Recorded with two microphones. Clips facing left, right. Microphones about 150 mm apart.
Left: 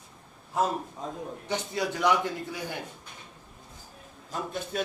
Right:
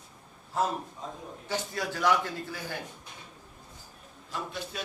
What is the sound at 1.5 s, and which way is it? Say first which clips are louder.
Speech: left 2 dB; 20° left (ahead or behind).